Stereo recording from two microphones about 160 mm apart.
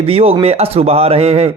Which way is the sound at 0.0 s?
40° right (ahead or behind).